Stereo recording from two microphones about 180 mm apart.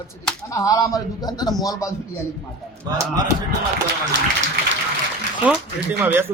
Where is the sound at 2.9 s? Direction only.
20° right (ahead or behind).